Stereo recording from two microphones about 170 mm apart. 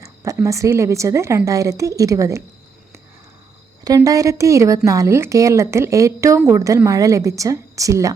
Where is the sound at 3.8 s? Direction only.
20° right (ahead or behind).